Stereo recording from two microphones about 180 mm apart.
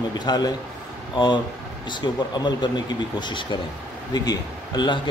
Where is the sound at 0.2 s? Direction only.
25° left (ahead or behind).